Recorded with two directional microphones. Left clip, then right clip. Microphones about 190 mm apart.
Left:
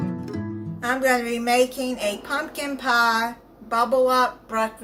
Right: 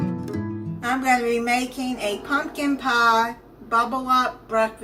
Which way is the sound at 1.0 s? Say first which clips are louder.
Right 1 dB; 55° left (ahead or behind).